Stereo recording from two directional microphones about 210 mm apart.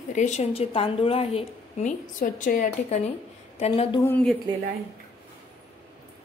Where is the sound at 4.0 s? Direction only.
5° left (ahead or behind).